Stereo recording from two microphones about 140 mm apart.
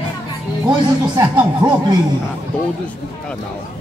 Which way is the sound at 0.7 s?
30° right (ahead or behind).